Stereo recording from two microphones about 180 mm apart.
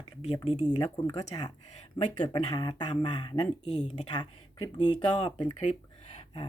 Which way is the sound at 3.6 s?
35° left (ahead or behind).